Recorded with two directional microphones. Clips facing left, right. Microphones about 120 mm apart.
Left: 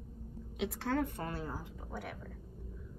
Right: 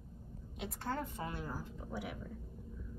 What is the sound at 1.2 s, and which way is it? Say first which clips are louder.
Speech: left 2 dB; 40° left (ahead or behind).